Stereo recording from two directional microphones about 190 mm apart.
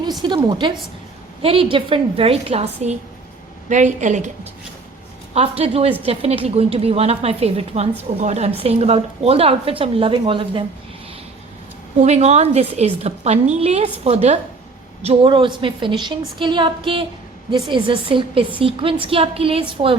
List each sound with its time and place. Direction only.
0.2 s a woman's voice: 25° right (ahead or behind); by 4.2 s 40° right (ahead or behind)
5.3 s a woman's voice: 30° right (ahead or behind)
11.9 s a woman's voice: 35° right (ahead or behind)